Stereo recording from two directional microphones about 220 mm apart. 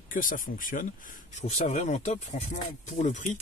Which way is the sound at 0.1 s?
40° left (ahead or behind).